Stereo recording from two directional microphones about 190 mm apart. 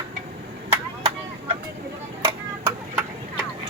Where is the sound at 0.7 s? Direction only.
30° right (ahead or behind).